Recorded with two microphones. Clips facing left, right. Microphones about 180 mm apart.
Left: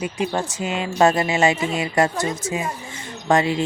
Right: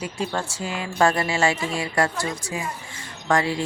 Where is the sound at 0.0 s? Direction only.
20° left (ahead or behind).